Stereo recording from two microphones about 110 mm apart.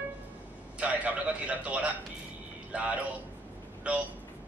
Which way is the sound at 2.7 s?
15° right (ahead or behind).